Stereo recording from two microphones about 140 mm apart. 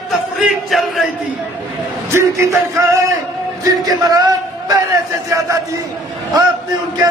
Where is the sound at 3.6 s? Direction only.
25° right (ahead or behind).